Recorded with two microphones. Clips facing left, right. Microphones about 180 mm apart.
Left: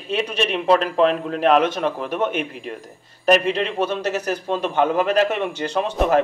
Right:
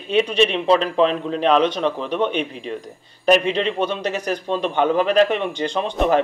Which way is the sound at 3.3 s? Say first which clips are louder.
Right 1 dB; 5° left (ahead or behind).